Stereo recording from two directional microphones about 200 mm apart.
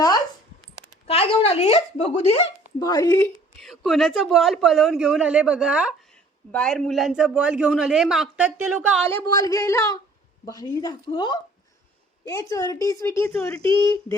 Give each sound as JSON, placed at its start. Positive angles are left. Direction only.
{"t": 1.0, "sound": "speech", "side_deg": 30}
{"t": 3.6, "sound": "speech", "side_deg": 0}
{"t": 9.0, "sound": "a woman's voice", "side_deg": 15}
{"t": 13.7, "sound": "a woman's voice", "side_deg": 15}